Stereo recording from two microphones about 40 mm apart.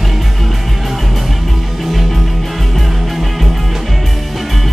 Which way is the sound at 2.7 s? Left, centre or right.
Centre.